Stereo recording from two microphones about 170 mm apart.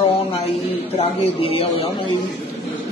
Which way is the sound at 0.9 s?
35° left (ahead or behind).